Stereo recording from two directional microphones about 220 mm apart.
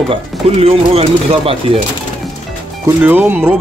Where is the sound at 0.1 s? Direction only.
25° right (ahead or behind).